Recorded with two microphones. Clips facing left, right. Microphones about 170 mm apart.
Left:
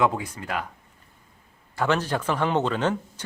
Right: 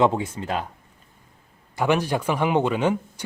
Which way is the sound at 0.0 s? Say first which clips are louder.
Right 3 dB; 25° right (ahead or behind).